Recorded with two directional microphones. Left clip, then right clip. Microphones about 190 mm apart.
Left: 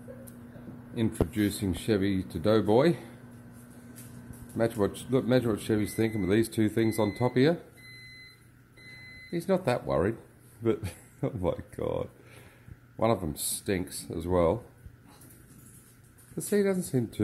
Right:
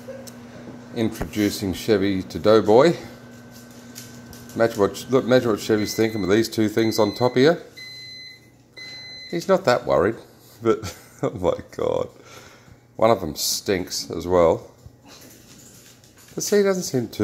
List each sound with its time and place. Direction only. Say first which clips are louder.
0.9 s speech: right 5 dB; centre (ahead or behind)
4.6 s speech: right 9 dB; centre (ahead or behind)
9.3 s speech: right 9 dB; centre (ahead or behind)
16.3 s speech: right 8 dB; centre (ahead or behind)